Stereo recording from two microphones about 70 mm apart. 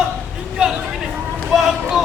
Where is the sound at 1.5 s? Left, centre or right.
Centre.